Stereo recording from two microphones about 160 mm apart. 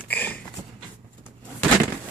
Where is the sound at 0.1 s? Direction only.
10° left (ahead or behind).